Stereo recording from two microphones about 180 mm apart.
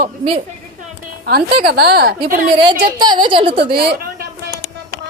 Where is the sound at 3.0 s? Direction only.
25° right (ahead or behind).